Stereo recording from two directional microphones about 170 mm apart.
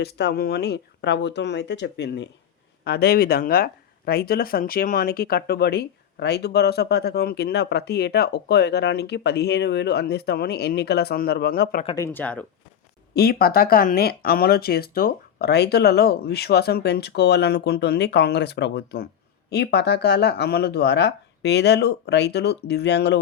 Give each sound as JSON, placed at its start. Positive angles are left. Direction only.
{"t": 0.0, "sound": "speech", "side_deg": 75}
{"t": 2.8, "sound": "speech", "side_deg": 70}
{"t": 11.9, "sound": "speech", "side_deg": 15}
{"t": 13.1, "sound": "speech", "side_deg": 65}